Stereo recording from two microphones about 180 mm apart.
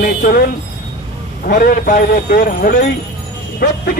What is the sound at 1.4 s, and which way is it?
Speech, 50° left (ahead or behind).